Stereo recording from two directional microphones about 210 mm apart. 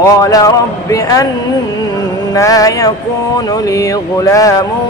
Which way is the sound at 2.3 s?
15° left (ahead or behind).